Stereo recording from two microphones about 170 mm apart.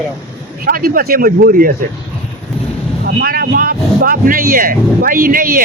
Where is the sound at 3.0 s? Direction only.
60° right (ahead or behind).